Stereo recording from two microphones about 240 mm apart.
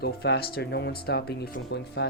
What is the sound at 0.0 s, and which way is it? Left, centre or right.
Speech, left.